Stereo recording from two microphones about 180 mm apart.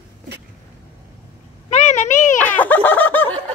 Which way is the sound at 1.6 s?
40° left (ahead or behind).